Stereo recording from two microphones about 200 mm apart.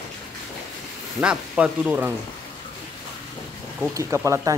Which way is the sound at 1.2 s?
5° right (ahead or behind).